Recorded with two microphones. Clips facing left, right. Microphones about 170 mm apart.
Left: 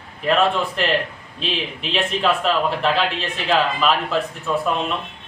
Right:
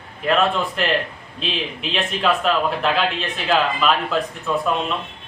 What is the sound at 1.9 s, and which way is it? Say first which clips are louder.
Speech: left 1 dB; centre (ahead or behind).